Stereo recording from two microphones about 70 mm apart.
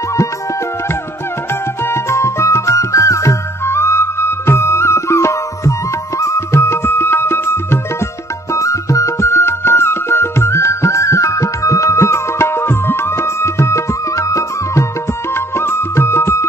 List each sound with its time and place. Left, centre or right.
1.5 s music: left
8.5 s music: left
15.3 s music: left